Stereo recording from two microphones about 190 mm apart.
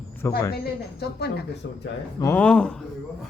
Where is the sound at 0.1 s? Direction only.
10° left (ahead or behind).